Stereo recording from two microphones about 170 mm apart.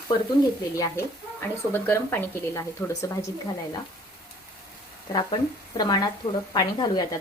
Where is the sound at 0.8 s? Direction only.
15° left (ahead or behind).